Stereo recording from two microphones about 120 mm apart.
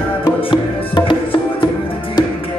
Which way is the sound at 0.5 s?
45° left (ahead or behind).